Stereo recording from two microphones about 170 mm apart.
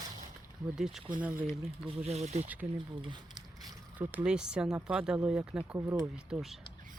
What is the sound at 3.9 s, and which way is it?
Speech, 10° right (ahead or behind).